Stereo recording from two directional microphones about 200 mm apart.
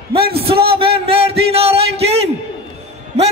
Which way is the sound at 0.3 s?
25° right (ahead or behind).